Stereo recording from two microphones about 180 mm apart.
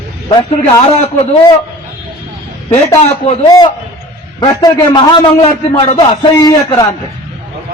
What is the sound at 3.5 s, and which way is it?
A man's voice, 20° left (ahead or behind).